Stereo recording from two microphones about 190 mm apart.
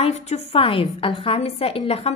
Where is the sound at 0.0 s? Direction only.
35° left (ahead or behind).